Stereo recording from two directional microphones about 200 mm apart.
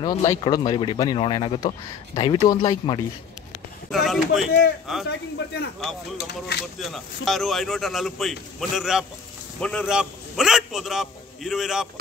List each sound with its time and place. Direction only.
0.0 s speech: 20° left (ahead or behind)
3.9 s a man's voice: centre (ahead or behind)
5.4 s speech: 60° left (ahead or behind)
6.8 s a man's voice: centre (ahead or behind)